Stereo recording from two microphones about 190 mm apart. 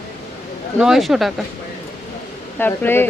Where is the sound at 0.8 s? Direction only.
Centre (ahead or behind).